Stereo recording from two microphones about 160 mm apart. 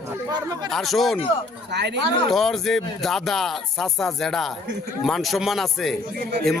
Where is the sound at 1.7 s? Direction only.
90° right.